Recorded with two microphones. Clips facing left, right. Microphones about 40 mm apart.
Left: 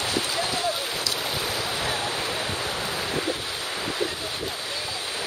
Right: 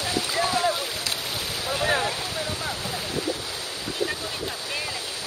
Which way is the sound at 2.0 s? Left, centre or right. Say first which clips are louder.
Left 1 dB; left.